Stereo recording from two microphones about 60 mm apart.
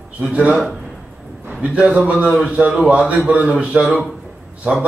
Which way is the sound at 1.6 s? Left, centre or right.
Right.